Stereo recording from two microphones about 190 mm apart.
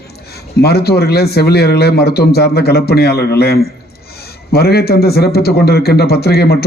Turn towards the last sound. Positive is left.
turn(degrees=55)  # may be behind; listen again after turning